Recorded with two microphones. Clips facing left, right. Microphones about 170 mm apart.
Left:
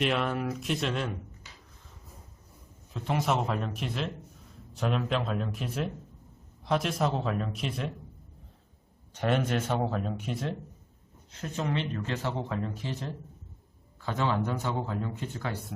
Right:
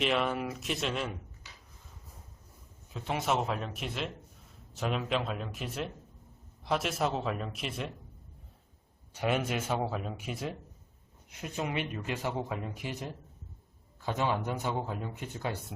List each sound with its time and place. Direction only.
0.0 s speech: centre (ahead or behind)
2.9 s speech: centre (ahead or behind)
9.1 s speech: 10° right (ahead or behind)